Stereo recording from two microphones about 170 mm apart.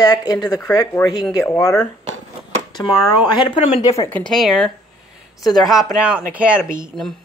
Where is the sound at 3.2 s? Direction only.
25° left (ahead or behind).